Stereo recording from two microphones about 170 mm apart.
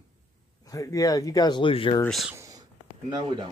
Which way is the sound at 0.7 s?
20° left (ahead or behind).